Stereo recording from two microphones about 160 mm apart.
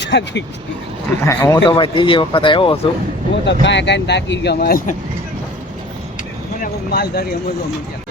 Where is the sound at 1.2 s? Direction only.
20° left (ahead or behind).